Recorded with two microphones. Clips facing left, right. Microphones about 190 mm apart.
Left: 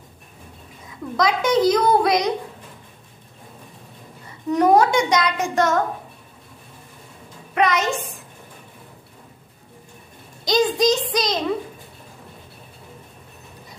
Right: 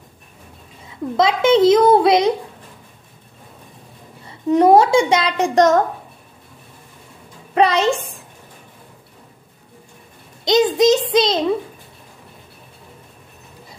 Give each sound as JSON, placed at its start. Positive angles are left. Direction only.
{"t": 1.1, "sound": "a child's voice", "side_deg": -25}
{"t": 4.5, "sound": "a child's voice", "side_deg": -25}
{"t": 7.5, "sound": "a child's voice", "side_deg": -30}
{"t": 10.4, "sound": "a child's voice", "side_deg": -20}